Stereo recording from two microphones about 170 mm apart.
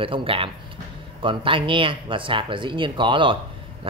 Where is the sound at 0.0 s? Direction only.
30° right (ahead or behind).